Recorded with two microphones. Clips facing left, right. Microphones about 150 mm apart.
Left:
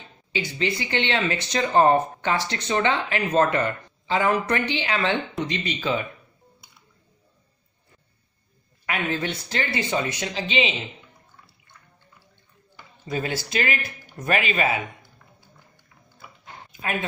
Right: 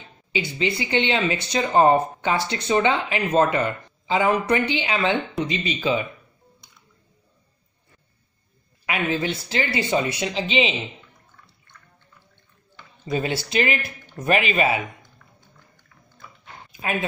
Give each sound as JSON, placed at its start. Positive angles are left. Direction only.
{"t": 0.3, "sound": "speech", "side_deg": -15}
{"t": 8.8, "sound": "speech", "side_deg": -10}
{"t": 13.0, "sound": "speech", "side_deg": -25}
{"t": 15.4, "sound": "music", "side_deg": 10}